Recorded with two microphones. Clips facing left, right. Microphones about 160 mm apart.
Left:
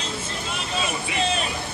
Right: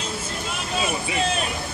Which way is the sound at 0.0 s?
Centre (ahead or behind).